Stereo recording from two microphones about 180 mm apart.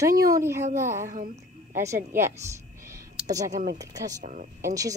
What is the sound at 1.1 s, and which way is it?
Speech, 50° right (ahead or behind).